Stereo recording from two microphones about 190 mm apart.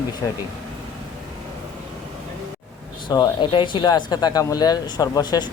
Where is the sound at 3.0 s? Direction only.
25° left (ahead or behind).